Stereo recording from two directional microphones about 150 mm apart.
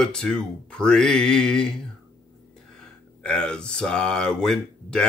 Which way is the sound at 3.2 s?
5° left (ahead or behind).